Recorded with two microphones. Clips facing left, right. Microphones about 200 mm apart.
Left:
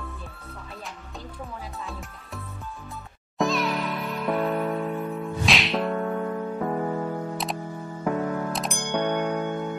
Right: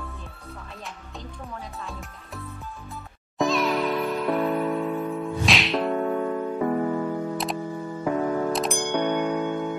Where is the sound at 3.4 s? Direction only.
Centre (ahead or behind).